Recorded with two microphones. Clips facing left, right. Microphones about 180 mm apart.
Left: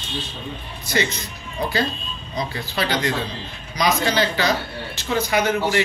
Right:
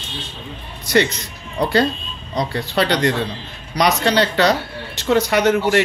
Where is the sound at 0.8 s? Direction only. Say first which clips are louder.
Right 6 dB; 70° right (ahead or behind).